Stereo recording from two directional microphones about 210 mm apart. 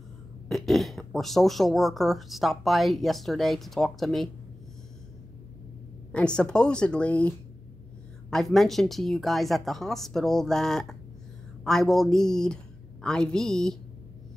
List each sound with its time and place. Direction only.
0.5 s speech: centre (ahead or behind)
6.1 s speech: 5° left (ahead or behind)